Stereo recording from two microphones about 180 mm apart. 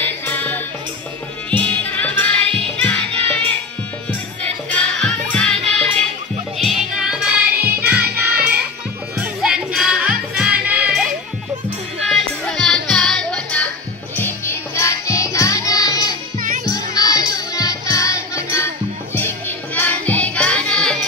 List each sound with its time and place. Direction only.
0.0 s music: 10° left (ahead or behind)
1.6 s music: 10° left (ahead or behind); by 8.0 s 10° right (ahead or behind)
9.2 s music: 5° right (ahead or behind)
12.1 s music: 5° left (ahead or behind)